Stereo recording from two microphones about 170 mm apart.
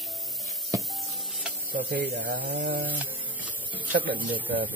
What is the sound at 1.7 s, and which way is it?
Speech, 55° right (ahead or behind).